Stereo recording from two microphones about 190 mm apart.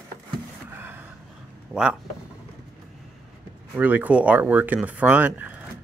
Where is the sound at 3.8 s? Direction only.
10° right (ahead or behind).